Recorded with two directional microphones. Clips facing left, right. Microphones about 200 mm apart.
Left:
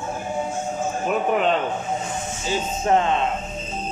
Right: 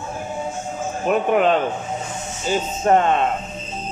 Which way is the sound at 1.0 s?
50° right (ahead or behind).